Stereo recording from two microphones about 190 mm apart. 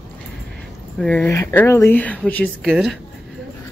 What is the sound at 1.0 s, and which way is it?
Speech, 5° left (ahead or behind).